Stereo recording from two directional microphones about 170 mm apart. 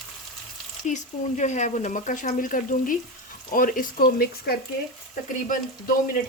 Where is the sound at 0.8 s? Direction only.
45° left (ahead or behind); by 4.6 s 65° left (ahead or behind).